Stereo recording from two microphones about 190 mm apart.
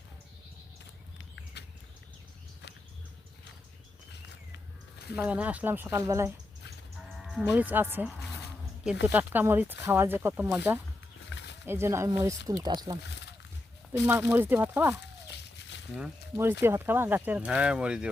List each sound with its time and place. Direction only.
1.6 s a sound: 65° left (ahead or behind)
5.1 s speech: 10° right (ahead or behind)
7.2 s music: centre (ahead or behind)
7.4 s speech: 10° right (ahead or behind)
14.1 s speech: 10° right (ahead or behind)
16.0 s speech: 10° right (ahead or behind)